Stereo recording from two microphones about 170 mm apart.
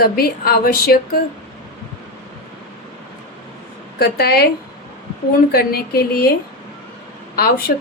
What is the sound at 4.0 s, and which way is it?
Speech, 65° left (ahead or behind).